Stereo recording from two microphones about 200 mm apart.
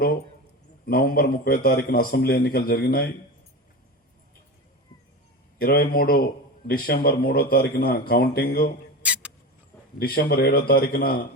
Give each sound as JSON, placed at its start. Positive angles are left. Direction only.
{"t": 0.9, "sound": "a man's voice", "side_deg": 50}
{"t": 5.5, "sound": "a man's voice", "side_deg": 45}
{"t": 9.0, "sound": "rodents", "side_deg": -5}
{"t": 10.0, "sound": "a man's voice", "side_deg": 50}